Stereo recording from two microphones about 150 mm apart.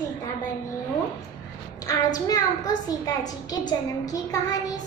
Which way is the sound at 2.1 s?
25° left (ahead or behind).